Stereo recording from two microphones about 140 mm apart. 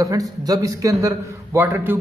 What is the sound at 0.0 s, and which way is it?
A man's voice, 25° right (ahead or behind).